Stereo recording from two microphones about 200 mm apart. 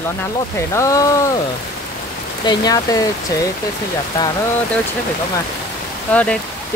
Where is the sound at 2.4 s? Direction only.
20° left (ahead or behind).